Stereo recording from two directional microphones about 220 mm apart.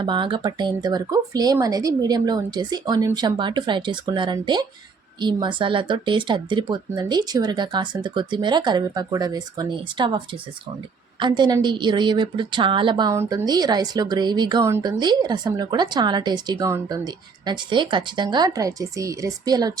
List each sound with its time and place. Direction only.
0.0 s a woman's voice: 20° right (ahead or behind)